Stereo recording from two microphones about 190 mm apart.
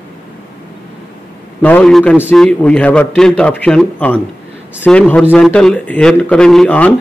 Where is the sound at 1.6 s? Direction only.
10° left (ahead or behind).